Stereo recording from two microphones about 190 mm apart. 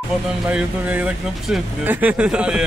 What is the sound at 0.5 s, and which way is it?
Speech, 5° right (ahead or behind).